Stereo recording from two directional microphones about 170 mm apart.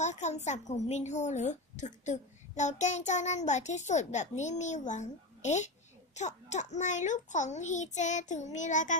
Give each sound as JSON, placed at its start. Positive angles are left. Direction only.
{"t": 0.0, "sound": "a woman's voice", "side_deg": 45}